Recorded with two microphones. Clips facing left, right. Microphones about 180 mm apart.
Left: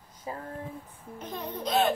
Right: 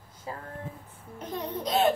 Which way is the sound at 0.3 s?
20° left (ahead or behind).